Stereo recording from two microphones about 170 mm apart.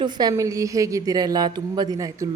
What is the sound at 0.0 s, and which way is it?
A woman's voice, 25° right (ahead or behind).